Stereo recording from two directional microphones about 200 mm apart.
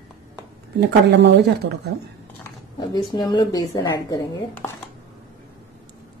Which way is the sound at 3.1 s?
20° left (ahead or behind).